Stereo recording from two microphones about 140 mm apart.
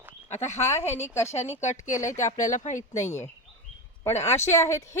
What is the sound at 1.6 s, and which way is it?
A woman's voice, 60° left (ahead or behind).